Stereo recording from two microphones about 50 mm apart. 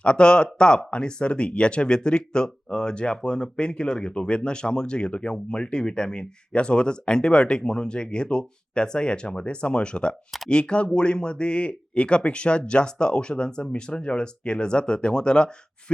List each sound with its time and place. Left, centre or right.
0.0 s speech: left